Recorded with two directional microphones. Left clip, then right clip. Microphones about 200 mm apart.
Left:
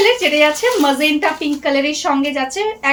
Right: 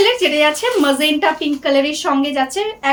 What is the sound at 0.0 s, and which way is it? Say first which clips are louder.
Speech: left 1 dB; 25° right (ahead or behind).